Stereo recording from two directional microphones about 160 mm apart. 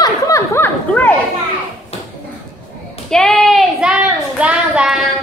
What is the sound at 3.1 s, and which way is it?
Child singing, 5° left (ahead or behind).